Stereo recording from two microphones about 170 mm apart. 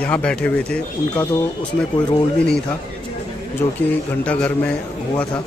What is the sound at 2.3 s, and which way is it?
Speech, 5° left (ahead or behind).